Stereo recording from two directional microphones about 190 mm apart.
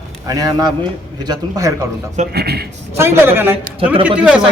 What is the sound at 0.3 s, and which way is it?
A man's voice, 20° right (ahead or behind).